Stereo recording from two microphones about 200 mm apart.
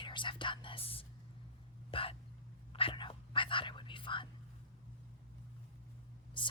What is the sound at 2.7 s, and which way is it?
Whispering, 25° left (ahead or behind).